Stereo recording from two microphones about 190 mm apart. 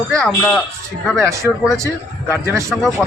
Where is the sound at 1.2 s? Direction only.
15° right (ahead or behind).